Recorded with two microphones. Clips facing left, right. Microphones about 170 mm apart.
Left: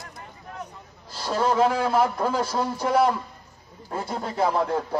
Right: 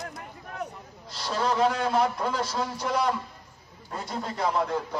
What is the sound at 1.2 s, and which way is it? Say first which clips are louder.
Speech: left 4 dB; 45° left (ahead or behind).